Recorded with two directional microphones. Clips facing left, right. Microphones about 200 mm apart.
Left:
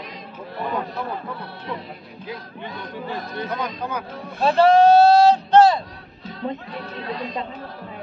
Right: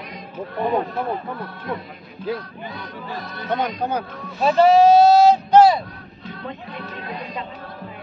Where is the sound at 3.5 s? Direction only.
30° right (ahead or behind).